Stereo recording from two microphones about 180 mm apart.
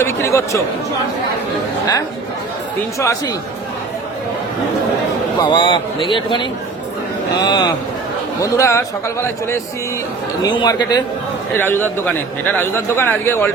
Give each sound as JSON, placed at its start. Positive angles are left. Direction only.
{"t": 0.0, "sound": "speech", "side_deg": 15}
{"t": 3.0, "sound": "speech", "side_deg": 15}
{"t": 5.4, "sound": "a man's voice", "side_deg": 25}
{"t": 10.5, "sound": "a man's voice", "side_deg": 25}
{"t": 11.5, "sound": "speech", "side_deg": 10}